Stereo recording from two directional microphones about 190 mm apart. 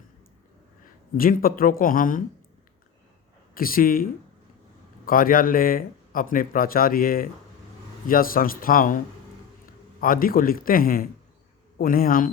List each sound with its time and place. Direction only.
1.1 s speech: 50° left (ahead or behind)
3.5 s speech: 50° left (ahead or behind)